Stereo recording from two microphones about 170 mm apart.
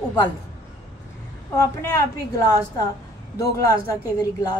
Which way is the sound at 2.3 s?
20° left (ahead or behind).